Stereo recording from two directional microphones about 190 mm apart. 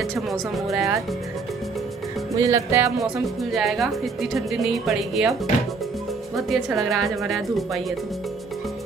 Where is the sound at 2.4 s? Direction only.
15° right (ahead or behind).